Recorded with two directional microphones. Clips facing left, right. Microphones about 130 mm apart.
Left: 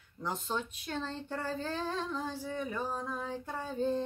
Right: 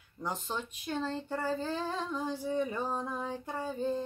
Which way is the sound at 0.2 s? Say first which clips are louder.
Left 1 dB; 10° right (ahead or behind).